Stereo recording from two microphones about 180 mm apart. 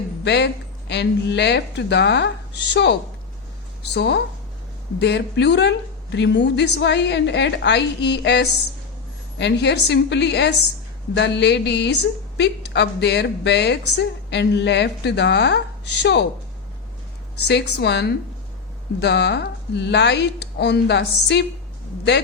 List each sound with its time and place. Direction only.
0.3 s a woman's voice: 70° left (ahead or behind)
17.5 s a woman's voice: 70° left (ahead or behind)